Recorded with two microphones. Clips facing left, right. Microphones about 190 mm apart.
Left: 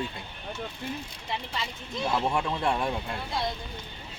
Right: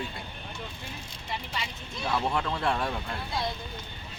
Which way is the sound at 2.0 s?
15° left (ahead or behind).